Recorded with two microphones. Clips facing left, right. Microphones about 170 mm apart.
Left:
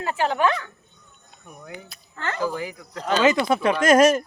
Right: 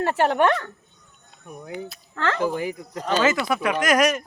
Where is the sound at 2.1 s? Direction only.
90° right.